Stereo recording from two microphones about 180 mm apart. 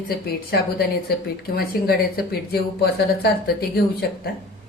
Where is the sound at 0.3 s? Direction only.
60° left (ahead or behind).